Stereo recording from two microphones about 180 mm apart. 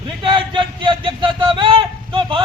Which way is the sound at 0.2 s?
30° right (ahead or behind).